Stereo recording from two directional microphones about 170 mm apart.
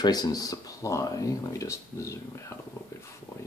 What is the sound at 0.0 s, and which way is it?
Speech, 25° left (ahead or behind).